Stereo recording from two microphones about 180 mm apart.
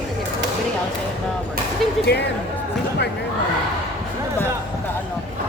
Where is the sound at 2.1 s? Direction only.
70° left (ahead or behind).